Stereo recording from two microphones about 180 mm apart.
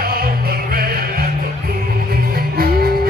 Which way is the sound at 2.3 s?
55° right (ahead or behind).